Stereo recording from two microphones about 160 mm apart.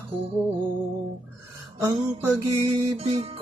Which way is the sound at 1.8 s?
20° right (ahead or behind).